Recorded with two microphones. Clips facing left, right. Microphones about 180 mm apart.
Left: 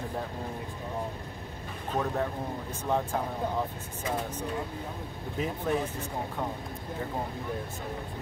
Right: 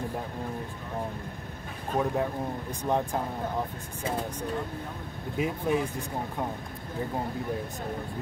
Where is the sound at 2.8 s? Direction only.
15° right (ahead or behind).